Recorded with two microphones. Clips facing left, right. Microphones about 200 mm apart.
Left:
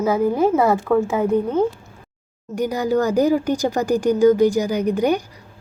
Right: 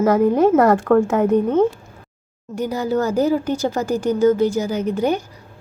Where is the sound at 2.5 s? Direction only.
15° left (ahead or behind).